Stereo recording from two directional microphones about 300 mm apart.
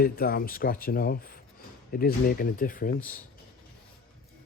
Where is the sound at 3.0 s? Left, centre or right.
Centre.